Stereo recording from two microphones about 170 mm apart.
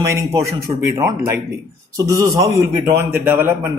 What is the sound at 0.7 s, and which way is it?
Speech, 15° right (ahead or behind).